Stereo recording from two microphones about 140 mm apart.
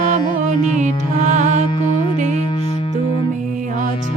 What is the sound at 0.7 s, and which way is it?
Music, 60° right (ahead or behind).